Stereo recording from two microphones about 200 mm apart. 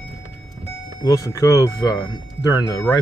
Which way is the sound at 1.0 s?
20° left (ahead or behind).